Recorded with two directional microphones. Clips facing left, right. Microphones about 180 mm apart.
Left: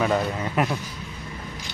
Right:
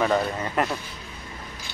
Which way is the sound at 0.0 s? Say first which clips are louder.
Even; 5° left (ahead or behind).